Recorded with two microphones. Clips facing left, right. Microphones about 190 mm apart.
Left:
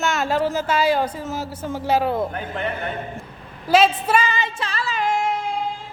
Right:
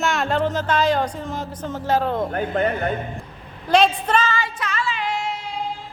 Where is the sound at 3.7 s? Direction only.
5° left (ahead or behind); by 5.5 s 50° left (ahead or behind).